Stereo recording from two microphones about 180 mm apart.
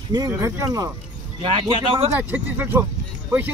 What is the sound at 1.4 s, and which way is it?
Speech, 30° right (ahead or behind).